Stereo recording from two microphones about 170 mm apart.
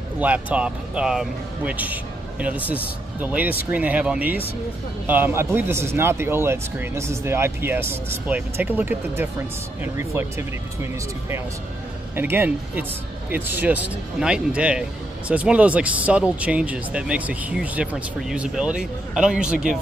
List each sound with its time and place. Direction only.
0.2 s speech: 10° right (ahead or behind)